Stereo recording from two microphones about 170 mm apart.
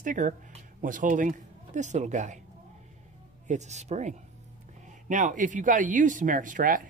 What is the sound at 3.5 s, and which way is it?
Speech, 45° right (ahead or behind).